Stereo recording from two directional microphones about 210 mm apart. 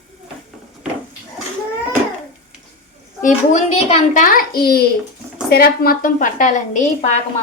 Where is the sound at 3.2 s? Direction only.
30° left (ahead or behind).